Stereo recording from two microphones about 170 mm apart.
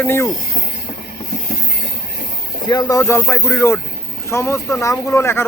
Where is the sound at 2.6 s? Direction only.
20° left (ahead or behind).